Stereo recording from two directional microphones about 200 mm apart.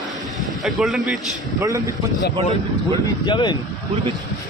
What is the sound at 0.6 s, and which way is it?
Speech, 5° right (ahead or behind).